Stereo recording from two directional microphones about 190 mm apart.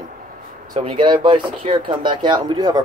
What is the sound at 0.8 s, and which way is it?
Speech, 25° right (ahead or behind).